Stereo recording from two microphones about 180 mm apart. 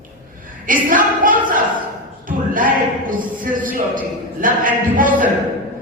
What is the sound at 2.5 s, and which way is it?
A man's voice, 50° right (ahead or behind).